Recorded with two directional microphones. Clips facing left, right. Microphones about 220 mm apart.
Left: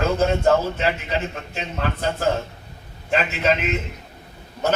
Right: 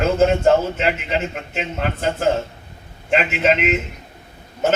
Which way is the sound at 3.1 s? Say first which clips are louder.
Right 3 dB; 25° right (ahead or behind).